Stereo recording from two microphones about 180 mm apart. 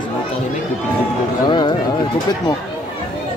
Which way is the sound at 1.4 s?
25° left (ahead or behind).